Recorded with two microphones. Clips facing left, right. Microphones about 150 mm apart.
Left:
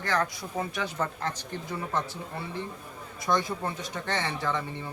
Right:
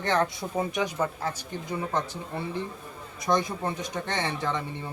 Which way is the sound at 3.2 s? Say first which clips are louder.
Right 2 dB; 20° right (ahead or behind).